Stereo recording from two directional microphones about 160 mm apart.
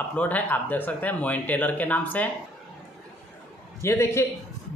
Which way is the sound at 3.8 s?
15° left (ahead or behind).